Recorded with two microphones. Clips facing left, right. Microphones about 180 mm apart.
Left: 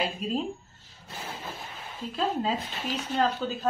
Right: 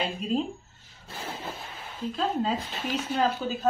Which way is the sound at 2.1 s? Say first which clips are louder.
Even; centre (ahead or behind).